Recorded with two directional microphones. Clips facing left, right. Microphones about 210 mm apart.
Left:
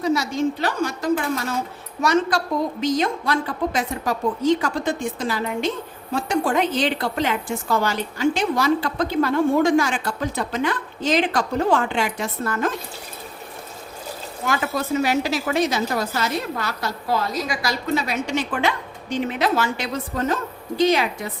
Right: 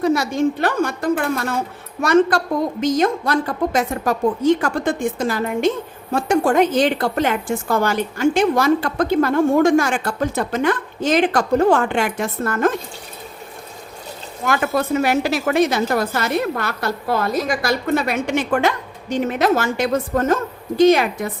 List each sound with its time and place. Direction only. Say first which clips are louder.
0.0 s a woman's voice: right 4 dB; 55° right (ahead or behind)
14.4 s a woman's voice: right 5 dB; 55° right (ahead or behind)